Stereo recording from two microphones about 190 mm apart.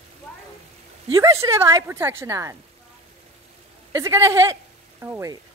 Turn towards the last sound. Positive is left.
turn(degrees=-15)  # may be behind; listen again after turning